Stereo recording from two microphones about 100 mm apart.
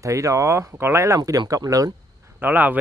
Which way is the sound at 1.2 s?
40° right (ahead or behind).